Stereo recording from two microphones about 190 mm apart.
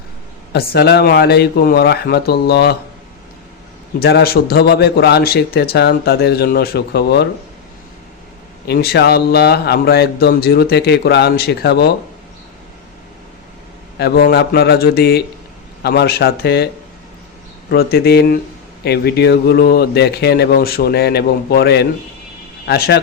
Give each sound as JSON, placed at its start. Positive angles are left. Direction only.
{"t": 0.5, "sound": "speech", "side_deg": 60}
{"t": 4.0, "sound": "speech", "side_deg": 55}
{"t": 8.6, "sound": "speech", "side_deg": 55}
{"t": 14.0, "sound": "speech", "side_deg": 60}
{"t": 17.9, "sound": "speech", "side_deg": 55}